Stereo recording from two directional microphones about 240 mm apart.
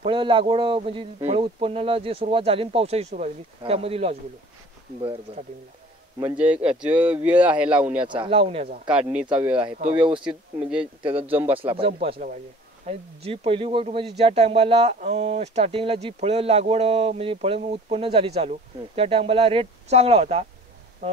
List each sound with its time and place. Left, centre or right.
0.0 s a man's voice: right
5.3 s a man's voice: right
6.1 s a man's voice: centre
8.0 s a man's voice: right
8.8 s speech: centre
11.0 s a man's voice: centre
11.2 s a man's voice: centre
11.5 s a man's voice: right